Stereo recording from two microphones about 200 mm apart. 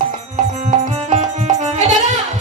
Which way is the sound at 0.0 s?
40° right (ahead or behind).